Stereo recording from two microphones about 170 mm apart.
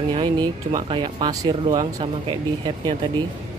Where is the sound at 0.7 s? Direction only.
25° right (ahead or behind).